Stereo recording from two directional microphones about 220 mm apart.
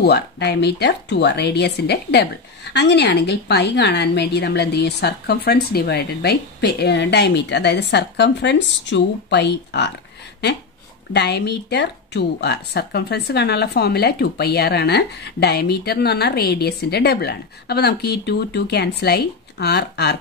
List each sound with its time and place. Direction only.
0.0 s a woman's voice: 50° left (ahead or behind)
11.1 s a woman's voice: 50° left (ahead or behind)